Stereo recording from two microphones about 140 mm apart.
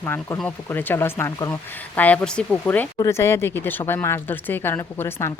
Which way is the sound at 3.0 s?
20° left (ahead or behind).